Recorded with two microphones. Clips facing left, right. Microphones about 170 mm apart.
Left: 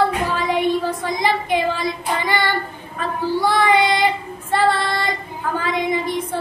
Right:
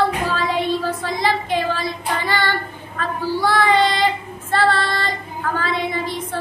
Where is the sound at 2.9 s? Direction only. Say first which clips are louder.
Left 1 dB; 15° left (ahead or behind).